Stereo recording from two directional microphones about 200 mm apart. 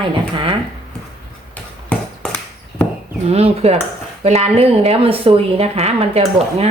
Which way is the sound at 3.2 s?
30° right (ahead or behind).